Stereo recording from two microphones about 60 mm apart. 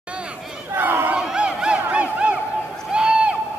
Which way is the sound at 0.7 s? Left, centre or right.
Right.